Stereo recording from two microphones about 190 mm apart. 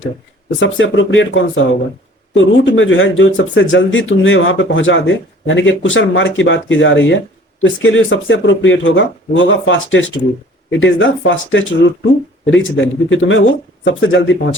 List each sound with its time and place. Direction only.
0.6 s speech: 75° left (ahead or behind)
13.8 s speech: 75° left (ahead or behind)